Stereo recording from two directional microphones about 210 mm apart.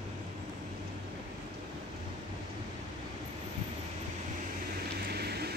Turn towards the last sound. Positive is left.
turn(degrees=-50)  # may be behind; listen again after turning